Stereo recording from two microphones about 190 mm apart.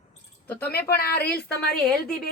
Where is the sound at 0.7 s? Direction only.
55° left (ahead or behind).